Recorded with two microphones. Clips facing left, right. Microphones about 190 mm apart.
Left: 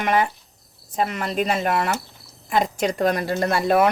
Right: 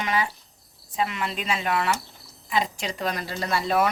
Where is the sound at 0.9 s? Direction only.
45° left (ahead or behind).